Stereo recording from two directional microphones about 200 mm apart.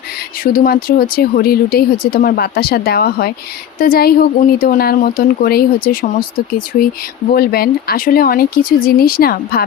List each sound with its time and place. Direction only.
0.4 s speech: 45° left (ahead or behind)